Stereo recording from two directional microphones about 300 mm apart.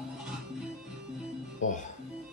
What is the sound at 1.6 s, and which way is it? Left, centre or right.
Music, left.